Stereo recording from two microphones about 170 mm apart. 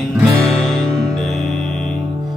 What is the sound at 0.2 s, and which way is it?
Music, centre (ahead or behind).